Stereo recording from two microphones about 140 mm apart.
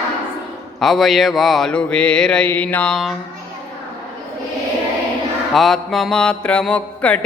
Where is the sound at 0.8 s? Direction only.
Centre (ahead or behind).